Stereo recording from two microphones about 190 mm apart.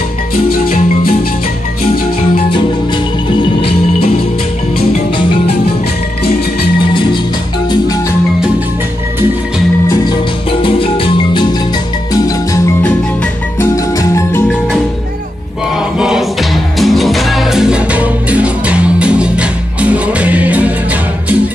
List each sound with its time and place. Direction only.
0.5 s music: 50° left (ahead or behind)
10.6 s music: 30° left (ahead or behind)
16.0 s music: 5° right (ahead or behind)